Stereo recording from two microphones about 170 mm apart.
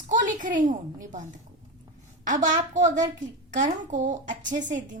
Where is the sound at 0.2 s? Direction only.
50° right (ahead or behind).